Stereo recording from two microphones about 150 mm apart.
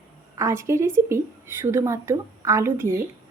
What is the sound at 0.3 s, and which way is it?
A woman's voice, 20° right (ahead or behind).